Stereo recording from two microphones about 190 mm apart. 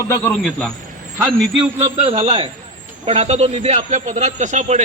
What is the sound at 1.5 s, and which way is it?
A man's voice, 30° right (ahead or behind).